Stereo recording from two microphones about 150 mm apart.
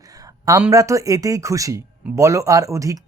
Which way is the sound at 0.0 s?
25° right (ahead or behind).